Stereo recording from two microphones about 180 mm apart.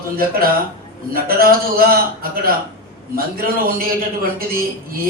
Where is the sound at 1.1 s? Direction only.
55° right (ahead or behind).